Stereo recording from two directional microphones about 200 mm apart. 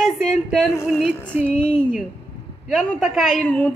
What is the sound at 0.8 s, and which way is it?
Music, 5° right (ahead or behind).